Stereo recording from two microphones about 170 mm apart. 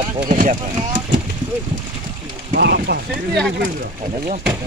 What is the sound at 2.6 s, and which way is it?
Speech, 70° right (ahead or behind).